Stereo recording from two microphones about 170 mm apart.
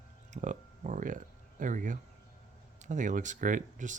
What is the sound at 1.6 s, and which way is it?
Speech, 50° right (ahead or behind).